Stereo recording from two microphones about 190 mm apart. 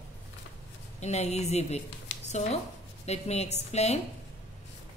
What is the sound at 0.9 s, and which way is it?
A woman's voice, 35° left (ahead or behind).